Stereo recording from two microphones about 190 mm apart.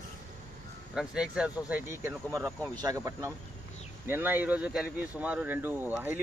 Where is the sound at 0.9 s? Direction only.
5° right (ahead or behind).